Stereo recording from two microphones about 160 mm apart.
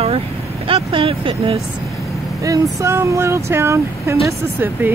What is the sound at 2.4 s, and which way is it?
Speech, 15° right (ahead or behind).